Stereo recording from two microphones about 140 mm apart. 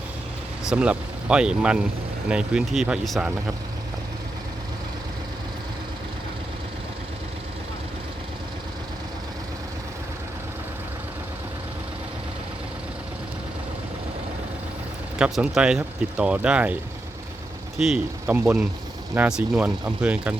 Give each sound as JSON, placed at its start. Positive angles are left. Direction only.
{"t": 0.7, "sound": "speech", "side_deg": -5}
{"t": 15.2, "sound": "speech", "side_deg": -5}
{"t": 17.7, "sound": "speech", "side_deg": -5}